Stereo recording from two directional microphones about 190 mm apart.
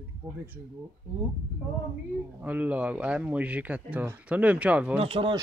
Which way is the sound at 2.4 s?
10° right (ahead or behind).